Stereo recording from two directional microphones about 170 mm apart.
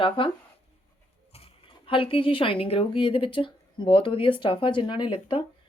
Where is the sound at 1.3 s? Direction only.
35° left (ahead or behind).